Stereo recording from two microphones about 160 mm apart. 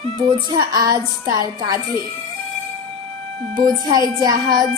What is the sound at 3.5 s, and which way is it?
Speech, 25° right (ahead or behind).